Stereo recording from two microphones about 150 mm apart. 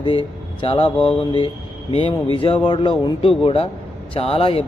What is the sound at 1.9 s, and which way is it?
A man's voice, 40° left (ahead or behind).